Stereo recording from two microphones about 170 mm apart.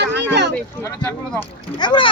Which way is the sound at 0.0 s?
85° right.